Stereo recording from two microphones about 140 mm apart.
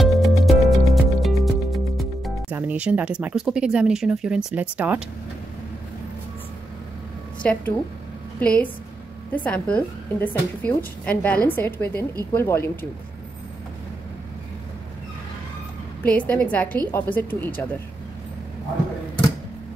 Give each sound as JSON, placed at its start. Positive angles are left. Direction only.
{"t": 0.0, "sound": "music", "side_deg": 0}
{"t": 2.5, "sound": "speech", "side_deg": -10}
{"t": 7.4, "sound": "a woman's voice", "side_deg": 10}
{"t": 16.0, "sound": "a woman's voice", "side_deg": 10}